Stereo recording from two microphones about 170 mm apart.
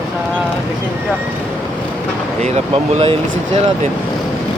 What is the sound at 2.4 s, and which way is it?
Speech, 40° right (ahead or behind).